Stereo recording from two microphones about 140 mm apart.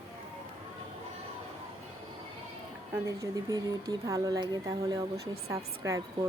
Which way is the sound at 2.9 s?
20° right (ahead or behind).